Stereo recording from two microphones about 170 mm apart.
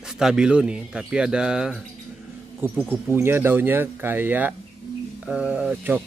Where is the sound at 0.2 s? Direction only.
5° right (ahead or behind).